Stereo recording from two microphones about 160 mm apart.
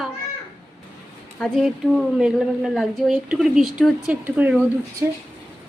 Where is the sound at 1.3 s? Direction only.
5° left (ahead or behind).